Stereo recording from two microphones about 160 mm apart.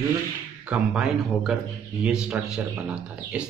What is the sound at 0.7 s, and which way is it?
A man's voice, 5° right (ahead or behind).